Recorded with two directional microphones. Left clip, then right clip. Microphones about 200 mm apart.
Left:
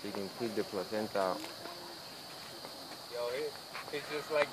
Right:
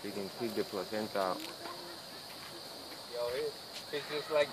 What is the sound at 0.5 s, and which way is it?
Speech, 45° left (ahead or behind).